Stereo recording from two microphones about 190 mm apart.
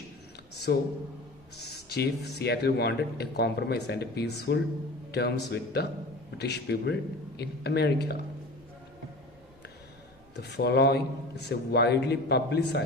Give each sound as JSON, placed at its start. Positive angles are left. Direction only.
{"t": 0.7, "sound": "a man's voice", "side_deg": 55}
{"t": 10.3, "sound": "speech", "side_deg": 60}